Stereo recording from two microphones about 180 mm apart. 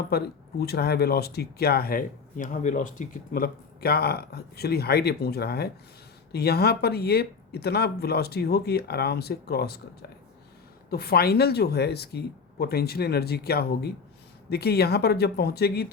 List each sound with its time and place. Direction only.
0.1 s speech: 65° left (ahead or behind)